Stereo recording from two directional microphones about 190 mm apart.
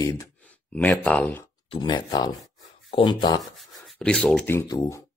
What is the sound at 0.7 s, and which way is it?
Speech, 10° left (ahead or behind).